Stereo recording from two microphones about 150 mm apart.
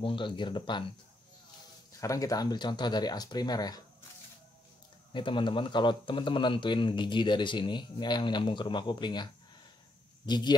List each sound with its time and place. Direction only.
0.0 s a man's voice: 30° left (ahead or behind)
1.9 s speech: 20° left (ahead or behind)
5.1 s a man's voice: 35° left (ahead or behind)